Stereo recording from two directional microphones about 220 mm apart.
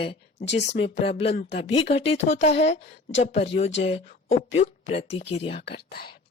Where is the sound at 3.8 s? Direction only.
30° left (ahead or behind).